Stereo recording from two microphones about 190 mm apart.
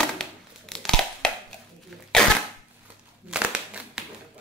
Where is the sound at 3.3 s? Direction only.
5° right (ahead or behind).